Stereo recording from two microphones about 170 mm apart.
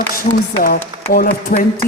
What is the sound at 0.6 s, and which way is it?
Speech, 60° left (ahead or behind).